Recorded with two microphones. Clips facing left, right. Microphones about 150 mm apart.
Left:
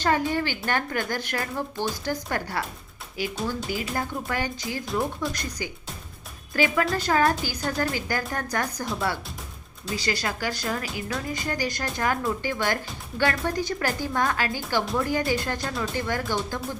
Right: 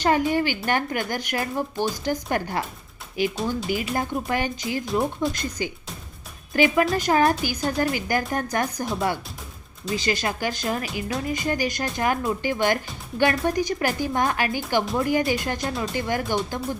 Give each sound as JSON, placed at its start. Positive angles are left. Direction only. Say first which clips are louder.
{"t": 0.0, "sound": "speech", "louder": "right 3 dB", "side_deg": -15}
{"t": 9.9, "sound": "speech", "louder": "right 3 dB", "side_deg": -20}